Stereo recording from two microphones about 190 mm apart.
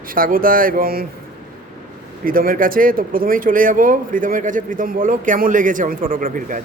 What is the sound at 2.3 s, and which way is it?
Speech, 45° right (ahead or behind).